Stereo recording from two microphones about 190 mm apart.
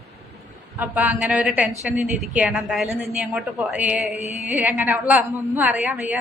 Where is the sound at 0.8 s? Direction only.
10° right (ahead or behind).